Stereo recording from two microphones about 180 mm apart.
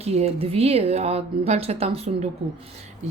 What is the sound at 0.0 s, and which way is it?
Speech, 35° right (ahead or behind).